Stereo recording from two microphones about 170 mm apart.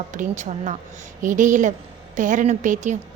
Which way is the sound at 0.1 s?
45° right (ahead or behind).